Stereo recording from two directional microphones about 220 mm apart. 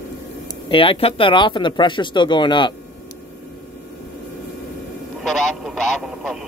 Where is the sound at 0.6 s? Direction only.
25° left (ahead or behind).